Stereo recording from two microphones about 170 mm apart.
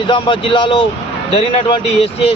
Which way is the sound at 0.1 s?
30° left (ahead or behind).